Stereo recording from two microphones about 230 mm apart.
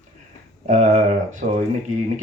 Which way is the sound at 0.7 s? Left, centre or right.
Right.